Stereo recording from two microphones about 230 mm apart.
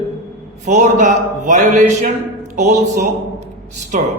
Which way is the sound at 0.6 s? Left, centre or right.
Right.